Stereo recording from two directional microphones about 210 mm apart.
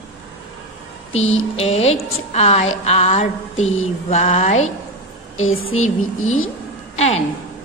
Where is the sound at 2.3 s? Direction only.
30° left (ahead or behind).